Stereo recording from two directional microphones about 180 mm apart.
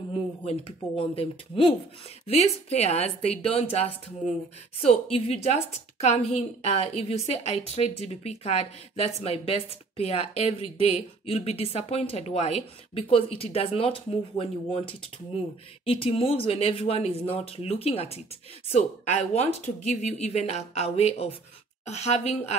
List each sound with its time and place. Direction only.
0.1 s a woman's voice: 30° left (ahead or behind)
4.8 s a woman's voice: 35° left (ahead or behind)